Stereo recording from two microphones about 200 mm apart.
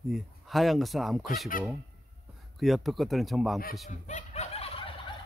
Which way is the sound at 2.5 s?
Centre (ahead or behind).